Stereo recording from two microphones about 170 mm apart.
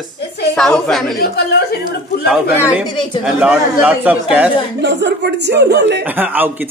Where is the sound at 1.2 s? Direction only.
70° left (ahead or behind).